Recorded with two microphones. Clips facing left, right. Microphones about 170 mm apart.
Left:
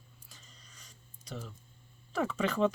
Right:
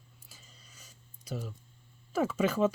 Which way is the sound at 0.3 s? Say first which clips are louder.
Right 1 dB; 10° right (ahead or behind).